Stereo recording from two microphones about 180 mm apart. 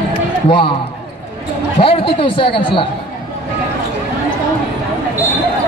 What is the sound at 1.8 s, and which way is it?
A woman's voice, 30° left (ahead or behind).